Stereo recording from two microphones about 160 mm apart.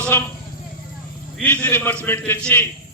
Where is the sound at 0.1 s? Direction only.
15° left (ahead or behind).